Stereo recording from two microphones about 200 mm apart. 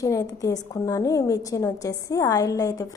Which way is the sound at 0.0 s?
15° left (ahead or behind).